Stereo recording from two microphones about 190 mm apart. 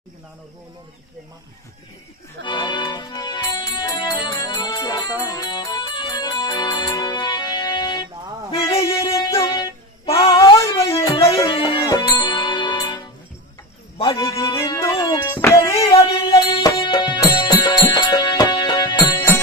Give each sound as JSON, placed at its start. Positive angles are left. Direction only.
{"t": 2.4, "sound": "music", "side_deg": 25}
{"t": 10.4, "sound": "music", "side_deg": 15}
{"t": 11.4, "sound": "music", "side_deg": 25}
{"t": 14.2, "sound": "music", "side_deg": 15}
{"t": 15.7, "sound": "music", "side_deg": 30}